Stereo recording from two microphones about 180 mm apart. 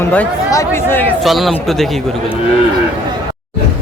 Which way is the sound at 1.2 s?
Centre (ahead or behind).